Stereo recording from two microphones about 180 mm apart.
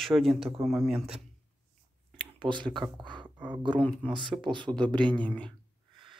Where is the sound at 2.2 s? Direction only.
25° right (ahead or behind).